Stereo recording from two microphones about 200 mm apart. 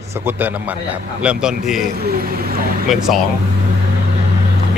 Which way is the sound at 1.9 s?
50° right (ahead or behind).